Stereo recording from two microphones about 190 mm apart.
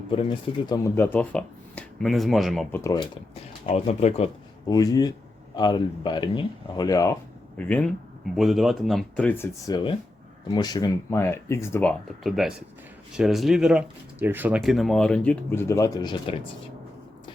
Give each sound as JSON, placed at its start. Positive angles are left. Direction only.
{"t": 0.1, "sound": "speech", "side_deg": 25}
{"t": 0.9, "sound": "speech", "side_deg": 10}
{"t": 2.8, "sound": "speech", "side_deg": 20}
{"t": 3.3, "sound": "speech", "side_deg": 35}
{"t": 4.7, "sound": "speech", "side_deg": 20}
{"t": 8.4, "sound": "speech", "side_deg": 0}
{"t": 9.7, "sound": "speech", "side_deg": 25}